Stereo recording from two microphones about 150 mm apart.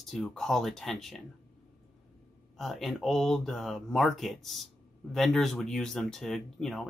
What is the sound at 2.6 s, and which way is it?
Speech, centre (ahead or behind).